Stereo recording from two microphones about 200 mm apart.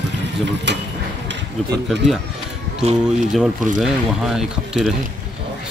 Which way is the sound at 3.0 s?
5° right (ahead or behind).